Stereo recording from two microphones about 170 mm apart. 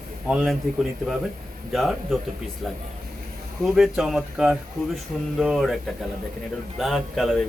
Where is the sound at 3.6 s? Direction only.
Centre (ahead or behind).